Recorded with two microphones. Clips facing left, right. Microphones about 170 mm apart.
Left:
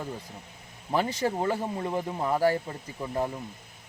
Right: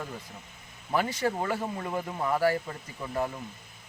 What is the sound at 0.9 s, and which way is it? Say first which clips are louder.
Speech: left 1 dB; 25° left (ahead or behind).